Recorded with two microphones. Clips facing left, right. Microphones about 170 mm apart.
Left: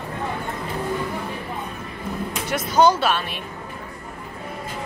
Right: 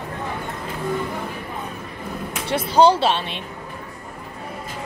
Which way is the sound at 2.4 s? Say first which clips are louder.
Right 2 dB; 30° right (ahead or behind).